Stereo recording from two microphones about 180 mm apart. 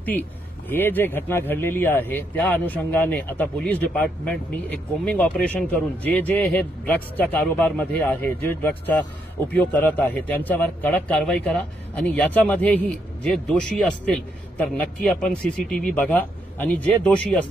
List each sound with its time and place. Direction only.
0.7 s speech: 10° left (ahead or behind)